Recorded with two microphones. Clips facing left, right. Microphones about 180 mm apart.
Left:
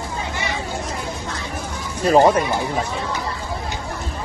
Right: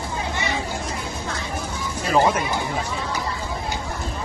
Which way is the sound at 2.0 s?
40° left (ahead or behind).